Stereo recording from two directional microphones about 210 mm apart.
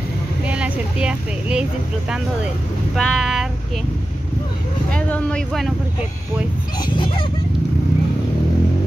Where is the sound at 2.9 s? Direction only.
Centre (ahead or behind).